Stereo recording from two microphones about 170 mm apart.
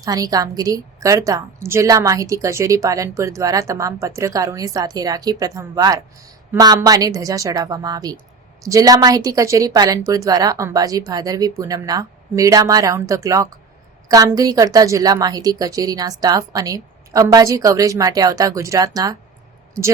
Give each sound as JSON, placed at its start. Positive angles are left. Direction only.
{"t": 0.0, "sound": "a woman's voice", "side_deg": -20}